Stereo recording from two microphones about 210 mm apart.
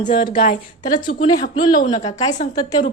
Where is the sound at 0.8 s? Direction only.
20° left (ahead or behind).